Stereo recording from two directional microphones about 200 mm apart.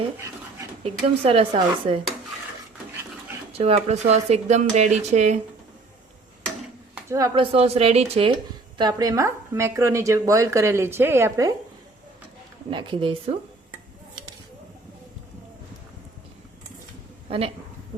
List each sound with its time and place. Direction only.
1.0 s speech: 30° right (ahead or behind)
3.6 s speech: 30° right (ahead or behind)
6.9 s speech: 15° right (ahead or behind)
7.5 s speech: 30° right (ahead or behind)
8.8 s a woman's voice: 20° right (ahead or behind)
12.7 s speech: 25° right (ahead or behind)
17.2 s speech: 30° right (ahead or behind)